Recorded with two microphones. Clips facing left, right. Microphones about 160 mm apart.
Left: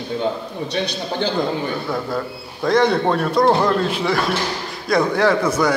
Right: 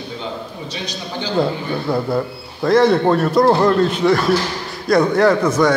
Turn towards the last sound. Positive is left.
turn(degrees=0)  # may be behind; listen again after turning